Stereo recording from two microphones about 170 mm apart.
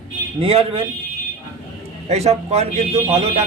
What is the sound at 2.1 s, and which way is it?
A man's voice, 40° right (ahead or behind).